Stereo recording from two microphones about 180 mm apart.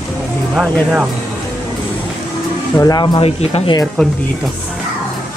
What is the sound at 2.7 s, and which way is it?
Speech, 20° left (ahead or behind).